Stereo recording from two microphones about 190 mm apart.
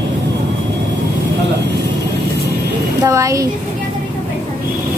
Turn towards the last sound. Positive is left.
turn(degrees=-15)  # may be behind; listen again after turning